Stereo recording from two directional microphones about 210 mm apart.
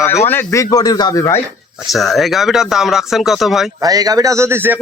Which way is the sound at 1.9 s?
Centre (ahead or behind).